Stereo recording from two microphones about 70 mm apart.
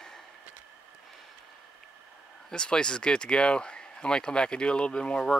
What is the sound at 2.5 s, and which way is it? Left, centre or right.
Speech, centre.